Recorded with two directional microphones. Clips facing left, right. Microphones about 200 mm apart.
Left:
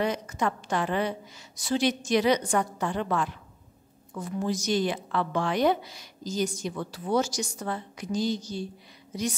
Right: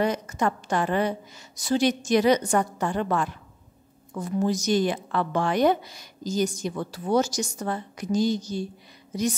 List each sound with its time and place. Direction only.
0.0 s a woman's voice: 45° right (ahead or behind)